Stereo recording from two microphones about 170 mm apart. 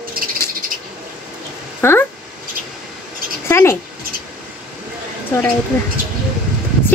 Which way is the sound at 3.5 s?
15° left (ahead or behind).